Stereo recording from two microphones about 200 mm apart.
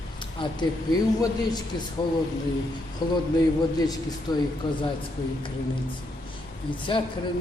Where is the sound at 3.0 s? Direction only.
20° left (ahead or behind).